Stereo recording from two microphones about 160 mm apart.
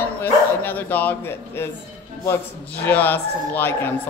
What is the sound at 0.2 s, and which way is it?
Speech, 10° left (ahead or behind).